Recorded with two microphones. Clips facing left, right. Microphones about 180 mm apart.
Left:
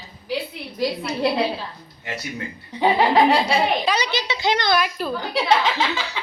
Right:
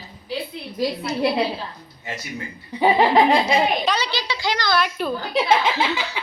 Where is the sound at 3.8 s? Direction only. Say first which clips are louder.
Left 1 dB; 15° left (ahead or behind).